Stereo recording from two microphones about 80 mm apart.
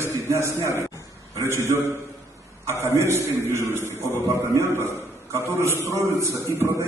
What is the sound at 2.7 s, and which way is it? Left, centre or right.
A man's voice, right.